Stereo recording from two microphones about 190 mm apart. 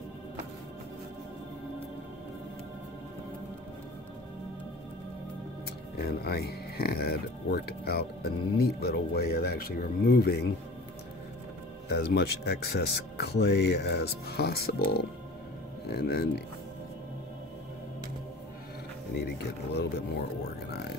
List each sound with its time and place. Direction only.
5.9 s speech: 55° left (ahead or behind)
11.9 s speech: 60° left (ahead or behind)
15.9 s speech: 55° left (ahead or behind)
19.3 s speech: 60° left (ahead or behind)